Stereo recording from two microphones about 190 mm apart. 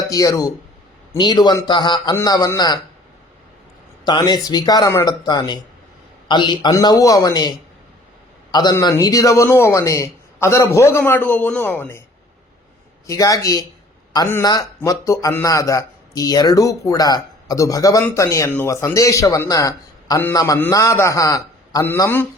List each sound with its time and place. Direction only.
0.1 s a man's voice: 20° left (ahead or behind)
4.0 s speech: 20° left (ahead or behind)
8.5 s a man's voice: 20° left (ahead or behind)
13.1 s a man's voice: 20° left (ahead or behind)